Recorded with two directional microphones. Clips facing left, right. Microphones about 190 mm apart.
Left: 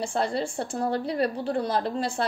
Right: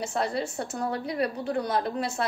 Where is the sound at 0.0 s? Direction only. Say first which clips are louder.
Left 2 dB; 30° left (ahead or behind).